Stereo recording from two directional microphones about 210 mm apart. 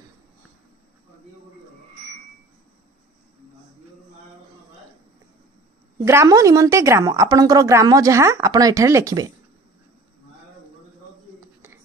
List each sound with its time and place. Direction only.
6.0 s a woman's voice: 15° right (ahead or behind)